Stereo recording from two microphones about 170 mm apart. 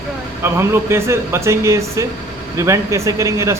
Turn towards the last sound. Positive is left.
turn(degrees=-15)  # may be behind; listen again after turning